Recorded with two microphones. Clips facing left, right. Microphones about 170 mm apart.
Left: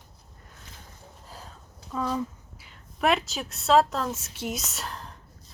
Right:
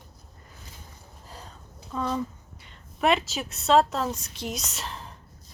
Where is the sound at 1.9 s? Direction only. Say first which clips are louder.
Even; 5° left (ahead or behind).